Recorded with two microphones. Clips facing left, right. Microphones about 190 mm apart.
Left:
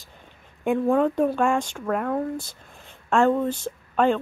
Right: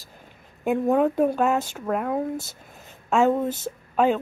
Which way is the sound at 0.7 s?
5° right (ahead or behind).